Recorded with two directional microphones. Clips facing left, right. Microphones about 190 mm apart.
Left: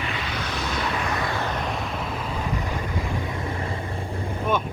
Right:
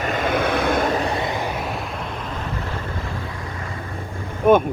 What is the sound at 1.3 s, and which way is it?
Vehicle, 15° right (ahead or behind).